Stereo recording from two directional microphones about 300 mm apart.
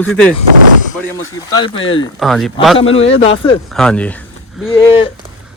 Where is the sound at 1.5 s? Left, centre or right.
Centre.